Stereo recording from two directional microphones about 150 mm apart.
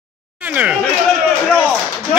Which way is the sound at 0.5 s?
10° right (ahead or behind).